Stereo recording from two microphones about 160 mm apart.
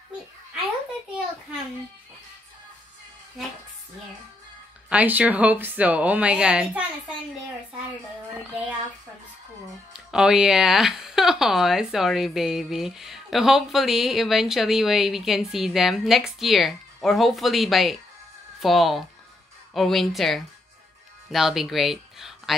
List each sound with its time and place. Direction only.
4.8 s speech: 10° right (ahead or behind)
9.9 s speech: 5° right (ahead or behind)